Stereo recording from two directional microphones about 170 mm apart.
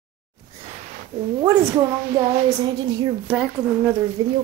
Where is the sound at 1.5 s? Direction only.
15° right (ahead or behind).